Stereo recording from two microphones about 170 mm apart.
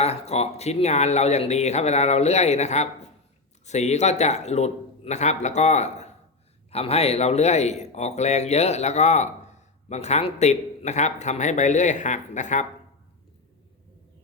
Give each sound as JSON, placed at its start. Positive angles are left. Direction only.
{"t": 0.0, "sound": "speech", "side_deg": 40}